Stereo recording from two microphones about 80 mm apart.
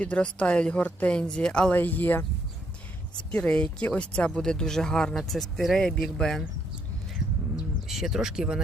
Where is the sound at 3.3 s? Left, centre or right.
Centre.